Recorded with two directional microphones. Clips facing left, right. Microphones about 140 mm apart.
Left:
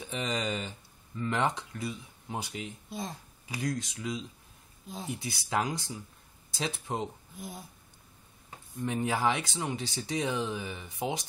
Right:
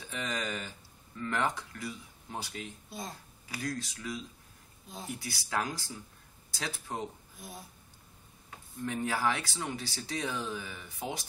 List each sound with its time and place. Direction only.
0.0 s speech: 20° left (ahead or behind)
2.9 s speech: centre (ahead or behind)
3.4 s speech: 20° left (ahead or behind)
8.8 s speech: 20° left (ahead or behind)